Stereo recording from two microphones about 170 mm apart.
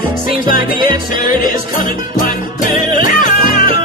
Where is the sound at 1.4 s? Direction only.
55° left (ahead or behind).